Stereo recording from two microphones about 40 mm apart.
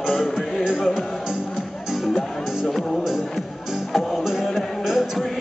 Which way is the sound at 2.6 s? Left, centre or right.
Centre.